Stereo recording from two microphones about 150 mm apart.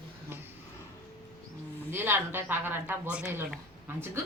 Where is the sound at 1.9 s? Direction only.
15° right (ahead or behind).